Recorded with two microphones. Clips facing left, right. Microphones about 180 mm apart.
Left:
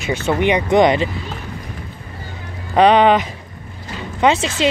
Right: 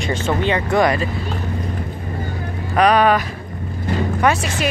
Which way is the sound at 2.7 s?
25° left (ahead or behind).